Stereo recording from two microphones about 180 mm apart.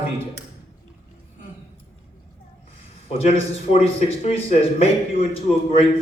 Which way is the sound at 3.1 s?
35° left (ahead or behind).